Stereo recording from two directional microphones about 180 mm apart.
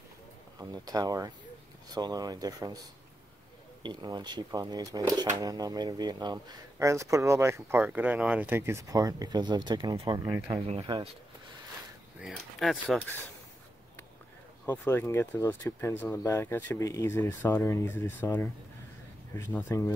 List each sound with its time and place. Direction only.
0.6 s speech: 20° right (ahead or behind)
3.8 s speech: 25° right (ahead or behind)
10.7 s speech: 30° right (ahead or behind)
12.2 s speech: centre (ahead or behind)
14.7 s speech: 10° left (ahead or behind)